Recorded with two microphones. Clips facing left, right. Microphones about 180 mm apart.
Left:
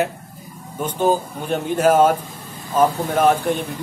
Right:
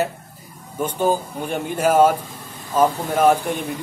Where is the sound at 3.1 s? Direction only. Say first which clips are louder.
Even; 10° right (ahead or behind).